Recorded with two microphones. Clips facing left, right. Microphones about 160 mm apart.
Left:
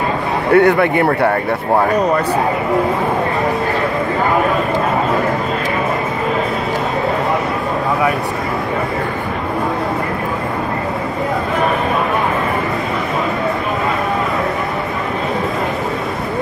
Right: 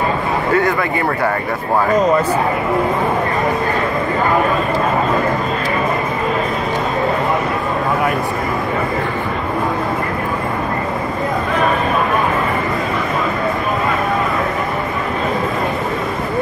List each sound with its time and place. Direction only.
0.5 s a man's voice: 65° left (ahead or behind)